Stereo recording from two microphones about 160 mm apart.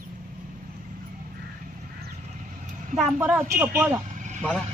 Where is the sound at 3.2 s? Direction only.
10° right (ahead or behind).